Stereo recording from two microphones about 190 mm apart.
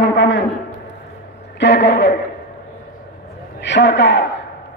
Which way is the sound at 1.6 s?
65° left (ahead or behind).